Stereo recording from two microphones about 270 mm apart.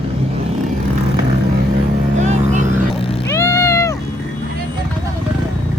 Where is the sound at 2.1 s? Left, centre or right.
Right.